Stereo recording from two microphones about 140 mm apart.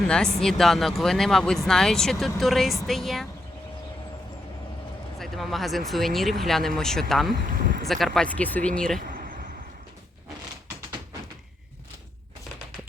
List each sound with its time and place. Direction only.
0.3 s speech: 5° left (ahead or behind)
5.2 s speech: centre (ahead or behind)
7.4 s speech: 80° right
7.9 s speech: centre (ahead or behind)
9.0 s a sound: 90° right